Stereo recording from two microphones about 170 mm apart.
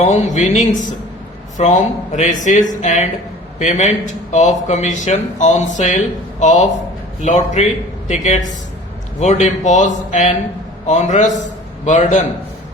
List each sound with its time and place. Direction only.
0.0 s speech: 45° left (ahead or behind)